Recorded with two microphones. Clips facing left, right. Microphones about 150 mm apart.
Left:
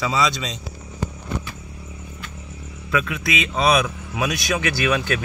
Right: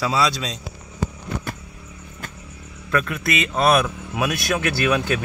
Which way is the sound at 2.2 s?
45° right (ahead or behind).